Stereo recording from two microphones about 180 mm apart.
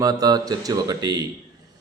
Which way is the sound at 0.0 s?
20° right (ahead or behind).